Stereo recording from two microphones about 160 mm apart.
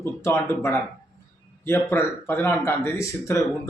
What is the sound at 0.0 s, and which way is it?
Speech, 15° left (ahead or behind).